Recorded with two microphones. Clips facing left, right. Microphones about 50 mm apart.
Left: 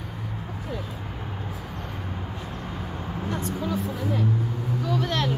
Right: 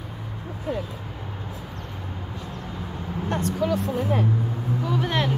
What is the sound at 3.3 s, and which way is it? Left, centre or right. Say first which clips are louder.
Vehicle: right 5 dB; right.